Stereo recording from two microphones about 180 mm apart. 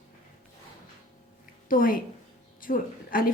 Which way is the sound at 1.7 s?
50° left (ahead or behind).